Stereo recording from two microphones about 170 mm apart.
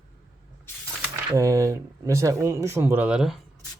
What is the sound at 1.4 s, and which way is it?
Speech, 20° right (ahead or behind).